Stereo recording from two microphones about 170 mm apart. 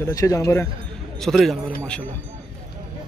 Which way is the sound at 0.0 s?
20° left (ahead or behind).